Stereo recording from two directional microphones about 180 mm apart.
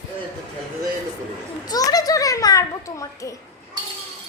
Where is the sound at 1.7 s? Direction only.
20° left (ahead or behind).